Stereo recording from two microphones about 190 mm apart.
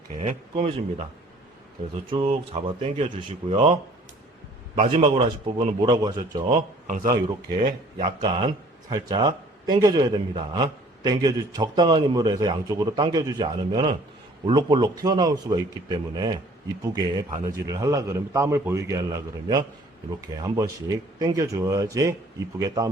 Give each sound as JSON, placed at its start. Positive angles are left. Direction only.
{"t": 0.2, "sound": "speech", "side_deg": -30}
{"t": 2.0, "sound": "speech", "side_deg": -30}
{"t": 4.9, "sound": "speech", "side_deg": -30}
{"t": 6.8, "sound": "speech", "side_deg": -40}
{"t": 7.1, "sound": "speech", "side_deg": -25}